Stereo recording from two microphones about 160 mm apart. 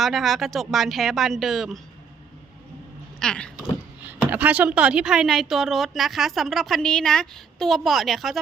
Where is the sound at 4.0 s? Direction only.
10° right (ahead or behind).